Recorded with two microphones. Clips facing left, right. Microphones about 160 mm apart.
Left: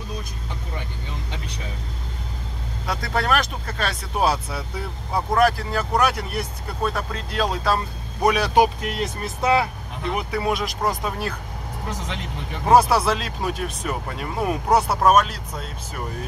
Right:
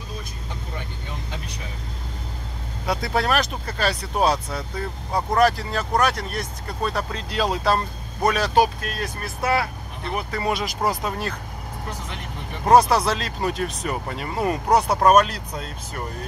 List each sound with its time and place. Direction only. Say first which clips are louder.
2.9 s speech: right 1 dB; 5° right (ahead or behind)
8.2 s speech: left 1 dB; 10° left (ahead or behind)
10.1 s speech: left 1 dB; 5° left (ahead or behind)
12.6 s speech: even; 5° left (ahead or behind)